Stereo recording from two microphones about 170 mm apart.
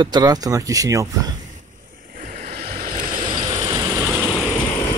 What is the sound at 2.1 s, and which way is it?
Vehicle, 55° right (ahead or behind).